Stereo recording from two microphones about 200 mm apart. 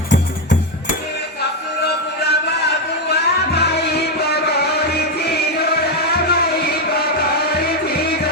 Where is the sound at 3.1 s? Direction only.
55° left (ahead or behind).